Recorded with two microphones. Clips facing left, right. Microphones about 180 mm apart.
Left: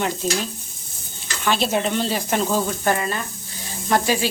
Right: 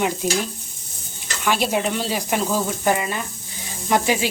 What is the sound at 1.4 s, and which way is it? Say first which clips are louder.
Speech: even; 10° right (ahead or behind).